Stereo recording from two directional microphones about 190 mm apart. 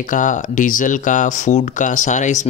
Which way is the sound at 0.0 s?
45° left (ahead or behind).